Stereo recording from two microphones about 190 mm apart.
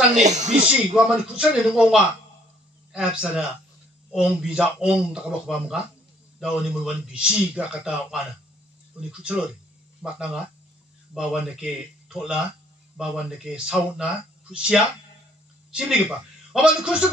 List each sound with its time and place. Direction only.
0.1 s speech: 35° right (ahead or behind)
0.7 s a man's voice: 5° right (ahead or behind)
16.5 s a man's voice: 5° right (ahead or behind)